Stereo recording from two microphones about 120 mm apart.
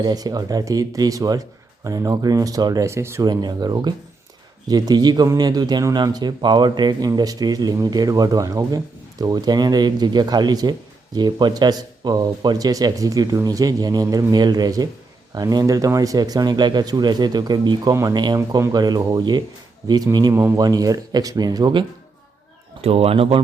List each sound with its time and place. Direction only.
0.0 s speech: 35° right (ahead or behind)
2.8 s speech: 20° right (ahead or behind)
3.2 s speech: 35° right (ahead or behind)
22.8 s speech: 55° right (ahead or behind)